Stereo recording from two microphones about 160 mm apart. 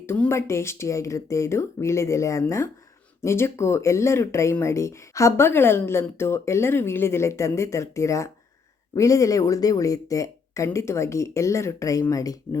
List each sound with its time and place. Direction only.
0.0 s speech: 15° left (ahead or behind)